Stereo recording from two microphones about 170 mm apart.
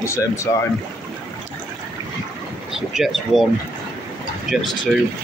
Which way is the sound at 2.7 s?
Centre (ahead or behind).